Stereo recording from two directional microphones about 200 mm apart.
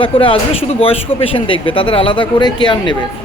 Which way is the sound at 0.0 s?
25° left (ahead or behind).